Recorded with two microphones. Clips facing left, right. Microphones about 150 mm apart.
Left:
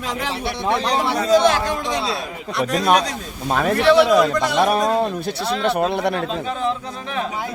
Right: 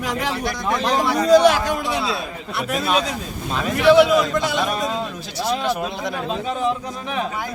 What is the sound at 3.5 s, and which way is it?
Speech, 55° left (ahead or behind).